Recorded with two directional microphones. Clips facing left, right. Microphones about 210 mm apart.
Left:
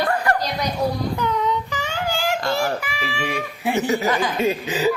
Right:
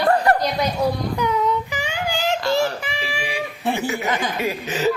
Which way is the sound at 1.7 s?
15° right (ahead or behind).